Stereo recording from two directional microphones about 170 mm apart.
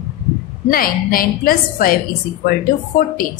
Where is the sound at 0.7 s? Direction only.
60° left (ahead or behind).